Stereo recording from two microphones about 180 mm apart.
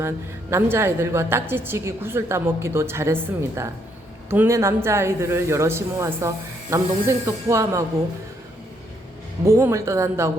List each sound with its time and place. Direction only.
0.5 s speech: 15° right (ahead or behind)
9.4 s speech: 15° right (ahead or behind)